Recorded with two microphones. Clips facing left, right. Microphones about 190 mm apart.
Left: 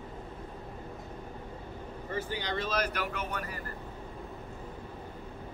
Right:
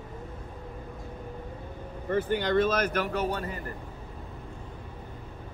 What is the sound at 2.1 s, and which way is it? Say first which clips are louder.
Speech: right 10 dB; 55° right (ahead or behind).